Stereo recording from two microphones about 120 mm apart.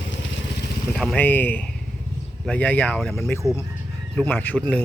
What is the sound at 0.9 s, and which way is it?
Speech, 5° left (ahead or behind).